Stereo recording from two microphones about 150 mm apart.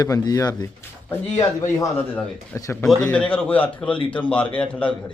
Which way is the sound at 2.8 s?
5° left (ahead or behind).